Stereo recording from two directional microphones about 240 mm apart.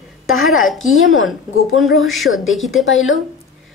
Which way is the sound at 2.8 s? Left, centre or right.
Left.